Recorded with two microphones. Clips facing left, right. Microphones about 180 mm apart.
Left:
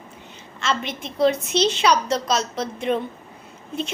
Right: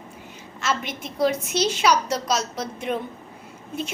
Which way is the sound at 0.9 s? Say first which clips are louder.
Left 2 dB; 25° left (ahead or behind).